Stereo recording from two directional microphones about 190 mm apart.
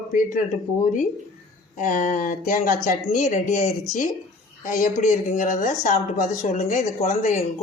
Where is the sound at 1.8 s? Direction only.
45° left (ahead or behind).